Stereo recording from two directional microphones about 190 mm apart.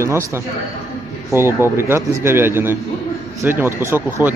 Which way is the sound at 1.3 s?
15° right (ahead or behind).